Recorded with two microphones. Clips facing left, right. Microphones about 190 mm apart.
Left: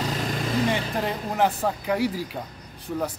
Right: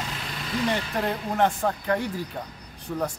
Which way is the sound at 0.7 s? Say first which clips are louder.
Even; centre (ahead or behind).